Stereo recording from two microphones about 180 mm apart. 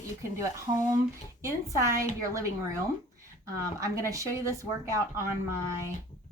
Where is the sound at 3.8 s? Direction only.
15° right (ahead or behind).